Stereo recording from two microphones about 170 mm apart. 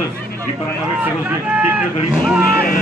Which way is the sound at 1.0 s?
10° right (ahead or behind).